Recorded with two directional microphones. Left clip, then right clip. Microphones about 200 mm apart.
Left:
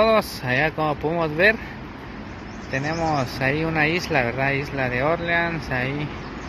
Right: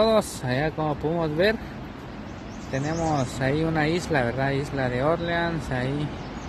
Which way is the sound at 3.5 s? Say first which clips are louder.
Left 3 dB; 15° right (ahead or behind).